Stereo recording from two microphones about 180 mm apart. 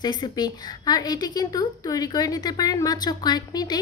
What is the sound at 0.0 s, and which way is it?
A woman's voice, 25° left (ahead or behind).